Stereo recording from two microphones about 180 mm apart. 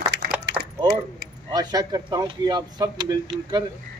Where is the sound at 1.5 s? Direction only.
20° right (ahead or behind).